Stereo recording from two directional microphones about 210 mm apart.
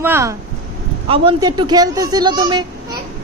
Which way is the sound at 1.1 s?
20° right (ahead or behind).